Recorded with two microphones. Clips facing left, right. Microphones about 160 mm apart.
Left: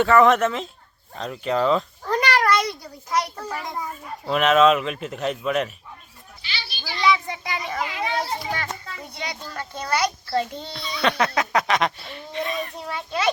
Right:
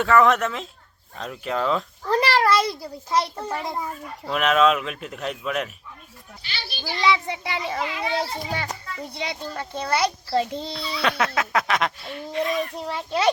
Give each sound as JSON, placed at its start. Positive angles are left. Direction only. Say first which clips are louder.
{"t": 0.0, "sound": "speech", "louder": "left 2 dB", "side_deg": 0}
{"t": 2.0, "sound": "a child's voice", "louder": "right 1 dB", "side_deg": -30}
{"t": 4.3, "sound": "speech", "louder": "left 3 dB", "side_deg": 0}
{"t": 6.4, "sound": "children playing", "louder": "right 2 dB", "side_deg": -50}
{"t": 6.9, "sound": "a child's voice", "louder": "even", "side_deg": -25}
{"t": 10.8, "sound": "speech", "louder": "left 2 dB", "side_deg": -5}
{"t": 13.1, "sound": "a child's voice", "louder": "right 2 dB", "side_deg": -35}